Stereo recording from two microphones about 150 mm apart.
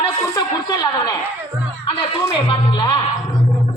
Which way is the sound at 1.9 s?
35° left (ahead or behind).